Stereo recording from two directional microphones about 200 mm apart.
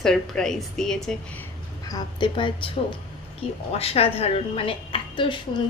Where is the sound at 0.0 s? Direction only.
Centre (ahead or behind).